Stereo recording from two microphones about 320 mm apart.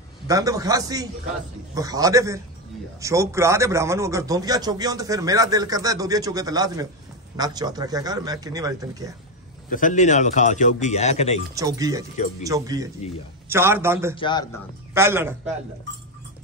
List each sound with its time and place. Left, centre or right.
0.3 s a man's voice: centre
9.7 s speech: left
11.5 s a man's voice: centre
14.1 s a man's voice: centre
15.0 s a man's voice: centre